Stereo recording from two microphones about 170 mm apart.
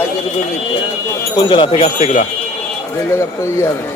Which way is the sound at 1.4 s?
30° left (ahead or behind).